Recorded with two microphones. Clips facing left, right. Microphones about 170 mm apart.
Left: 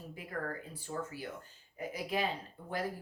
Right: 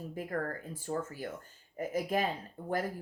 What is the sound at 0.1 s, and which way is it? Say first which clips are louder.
Speech: right 4 dB; 45° right (ahead or behind).